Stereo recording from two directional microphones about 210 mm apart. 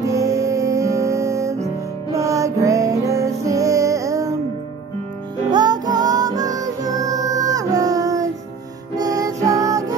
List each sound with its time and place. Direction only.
0.0 s music: 15° right (ahead or behind)
5.5 s music: 20° right (ahead or behind)